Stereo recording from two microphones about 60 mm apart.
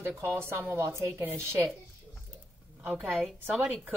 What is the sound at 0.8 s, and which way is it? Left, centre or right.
Speech, right.